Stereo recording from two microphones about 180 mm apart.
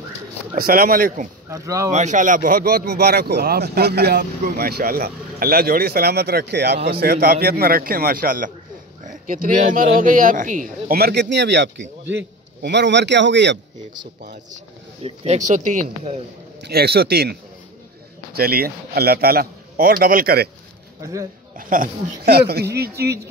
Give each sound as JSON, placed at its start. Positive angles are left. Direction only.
{"t": 0.6, "sound": "speech", "side_deg": -55}
{"t": 1.5, "sound": "speech", "side_deg": -15}
{"t": 1.9, "sound": "a man's voice", "side_deg": -40}
{"t": 15.0, "sound": "speech", "side_deg": -35}
{"t": 16.6, "sound": "speech", "side_deg": -60}
{"t": 21.0, "sound": "speech", "side_deg": -15}
{"t": 21.5, "sound": "speech", "side_deg": -50}